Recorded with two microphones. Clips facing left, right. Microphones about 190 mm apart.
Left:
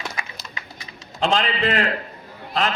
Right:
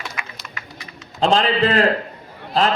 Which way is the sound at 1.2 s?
35° right (ahead or behind).